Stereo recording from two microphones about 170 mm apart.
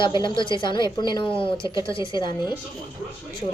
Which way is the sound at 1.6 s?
20° right (ahead or behind).